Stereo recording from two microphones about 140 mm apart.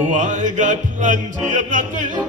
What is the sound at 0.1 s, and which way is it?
A man's voice, 65° right (ahead or behind).